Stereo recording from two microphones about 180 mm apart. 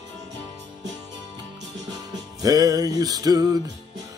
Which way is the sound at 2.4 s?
20° right (ahead or behind).